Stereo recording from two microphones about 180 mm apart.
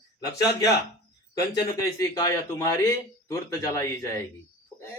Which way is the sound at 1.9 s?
20° left (ahead or behind).